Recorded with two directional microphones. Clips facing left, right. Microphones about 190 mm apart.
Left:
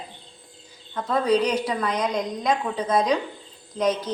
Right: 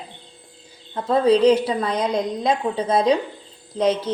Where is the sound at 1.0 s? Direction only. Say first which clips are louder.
Right 5 dB; 30° right (ahead or behind).